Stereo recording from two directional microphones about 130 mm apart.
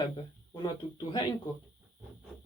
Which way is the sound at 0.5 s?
35° left (ahead or behind).